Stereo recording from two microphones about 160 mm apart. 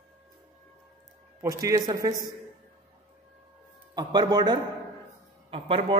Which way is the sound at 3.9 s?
25° right (ahead or behind).